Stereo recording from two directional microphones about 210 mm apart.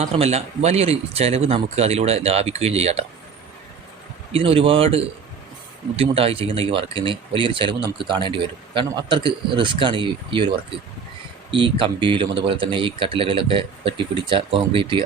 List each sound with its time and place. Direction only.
0.0 s speech: 30° right (ahead or behind)
4.3 s speech: 25° right (ahead or behind)